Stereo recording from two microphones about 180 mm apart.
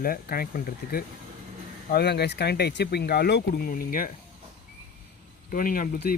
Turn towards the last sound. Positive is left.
turn(degrees=55)  # may be behind; listen again after turning